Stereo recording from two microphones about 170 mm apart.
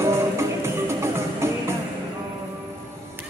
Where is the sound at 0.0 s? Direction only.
15° right (ahead or behind).